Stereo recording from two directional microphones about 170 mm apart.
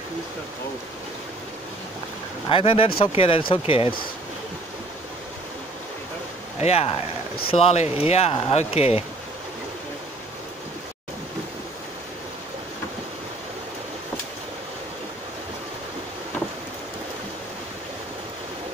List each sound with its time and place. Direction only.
2.5 s speech: 35° left (ahead or behind)
6.6 s speech: 35° left (ahead or behind)